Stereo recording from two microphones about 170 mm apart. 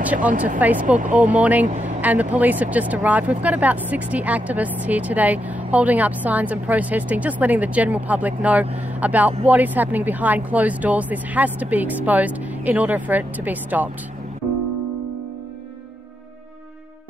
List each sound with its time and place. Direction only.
0.0 s speech: 10° right (ahead or behind)
1.7 s speech: 45° right (ahead or behind)
2.0 s vehicle: 10° right (ahead or behind)
2.3 s speech: 10° right (ahead or behind)